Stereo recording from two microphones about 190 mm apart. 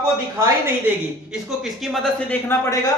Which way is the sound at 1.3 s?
Centre (ahead or behind).